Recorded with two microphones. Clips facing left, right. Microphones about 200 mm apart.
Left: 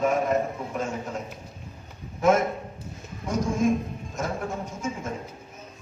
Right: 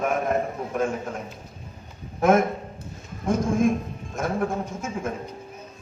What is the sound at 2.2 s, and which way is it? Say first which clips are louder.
A man's voice: right 2 dB; 55° right (ahead or behind).